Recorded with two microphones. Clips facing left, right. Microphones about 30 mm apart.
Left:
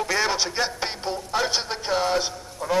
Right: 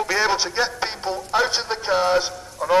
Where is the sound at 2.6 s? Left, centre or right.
Right.